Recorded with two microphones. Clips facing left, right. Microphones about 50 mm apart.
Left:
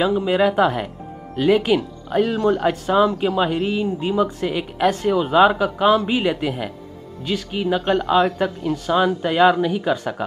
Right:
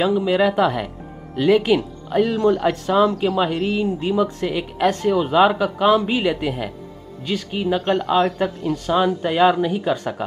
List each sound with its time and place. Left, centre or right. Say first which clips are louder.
0.2 s speech: even; centre
2.3 s speech: right 1 dB; centre